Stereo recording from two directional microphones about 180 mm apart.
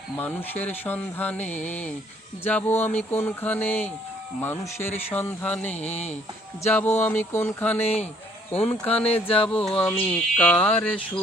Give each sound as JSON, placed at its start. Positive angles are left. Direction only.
{"t": 0.2, "sound": "speech", "side_deg": 10}
{"t": 5.8, "sound": "speech", "side_deg": 40}
{"t": 6.7, "sound": "speech", "side_deg": 10}
{"t": 9.2, "sound": "speech", "side_deg": 30}
{"t": 9.6, "sound": "speech", "side_deg": 10}